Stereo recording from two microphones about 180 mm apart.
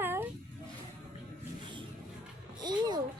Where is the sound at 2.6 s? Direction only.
25° right (ahead or behind).